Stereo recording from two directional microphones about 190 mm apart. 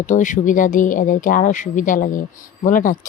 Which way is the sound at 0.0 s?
40° left (ahead or behind).